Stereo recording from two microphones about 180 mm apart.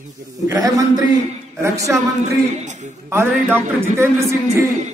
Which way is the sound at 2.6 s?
40° right (ahead or behind).